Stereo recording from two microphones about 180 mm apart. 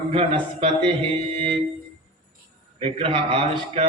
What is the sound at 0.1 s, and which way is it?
Speech, 30° right (ahead or behind).